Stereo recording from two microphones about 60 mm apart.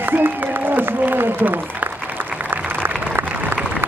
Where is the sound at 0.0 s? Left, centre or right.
Right.